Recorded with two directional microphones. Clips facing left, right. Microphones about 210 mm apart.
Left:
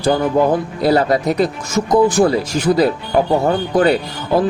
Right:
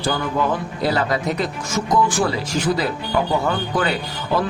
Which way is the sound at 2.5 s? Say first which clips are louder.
Left 4 dB; 50° left (ahead or behind).